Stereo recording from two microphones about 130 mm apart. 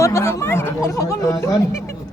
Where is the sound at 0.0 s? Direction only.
20° left (ahead or behind).